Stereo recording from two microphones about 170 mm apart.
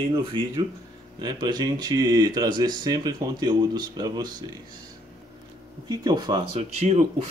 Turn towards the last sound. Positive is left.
turn(degrees=-40)  # may be behind; listen again after turning